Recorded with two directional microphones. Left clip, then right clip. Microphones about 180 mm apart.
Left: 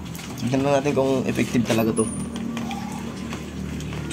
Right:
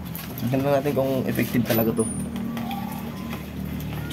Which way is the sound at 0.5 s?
10° right (ahead or behind).